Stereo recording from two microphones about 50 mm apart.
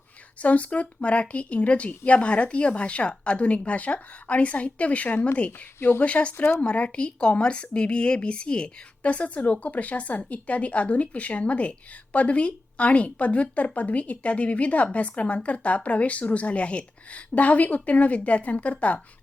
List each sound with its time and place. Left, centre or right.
0.4 s speech: left
5.5 s speech: left
6.1 s speech: left
6.3 s speech: left
6.6 s speech: left